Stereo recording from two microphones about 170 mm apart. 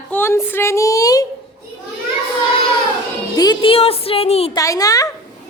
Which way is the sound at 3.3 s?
25° left (ahead or behind).